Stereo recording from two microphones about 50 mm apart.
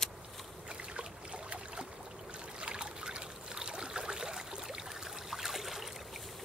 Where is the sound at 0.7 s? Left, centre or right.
Centre.